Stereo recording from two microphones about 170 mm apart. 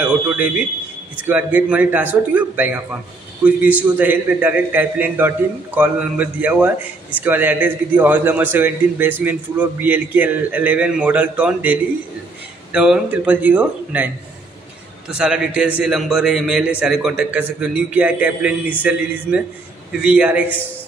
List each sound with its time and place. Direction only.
1.1 s a man's voice: 10° right (ahead or behind)